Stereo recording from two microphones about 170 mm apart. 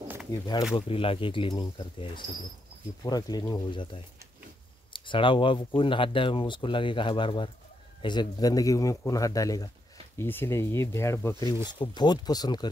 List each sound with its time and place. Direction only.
0.3 s speech: 25° left (ahead or behind)